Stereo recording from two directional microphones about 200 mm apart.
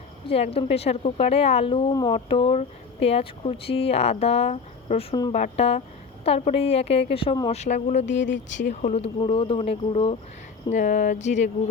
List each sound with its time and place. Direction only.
0.3 s a woman's voice: 30° left (ahead or behind)
7.9 s speech: 60° left (ahead or behind)
8.7 s a woman's voice: 35° left (ahead or behind)